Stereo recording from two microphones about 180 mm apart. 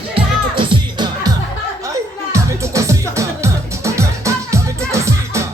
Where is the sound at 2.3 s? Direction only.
15° right (ahead or behind).